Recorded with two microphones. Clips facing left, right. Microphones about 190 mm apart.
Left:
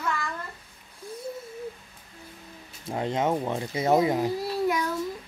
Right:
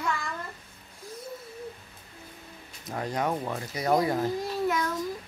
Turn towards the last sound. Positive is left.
turn(degrees=10)  # may be behind; listen again after turning